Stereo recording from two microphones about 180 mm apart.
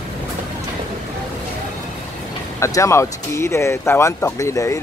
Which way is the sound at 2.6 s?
15° left (ahead or behind).